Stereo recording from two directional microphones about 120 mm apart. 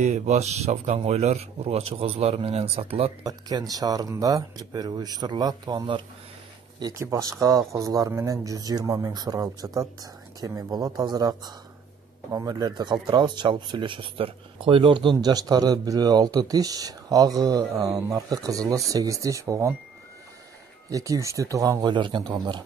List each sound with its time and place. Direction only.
0.0 s speech: 75° right (ahead or behind); by 3.1 s 55° right (ahead or behind)
3.3 s speech: 30° right (ahead or behind)
6.9 s speech: 25° right (ahead or behind)
20.9 s speech: 30° right (ahead or behind)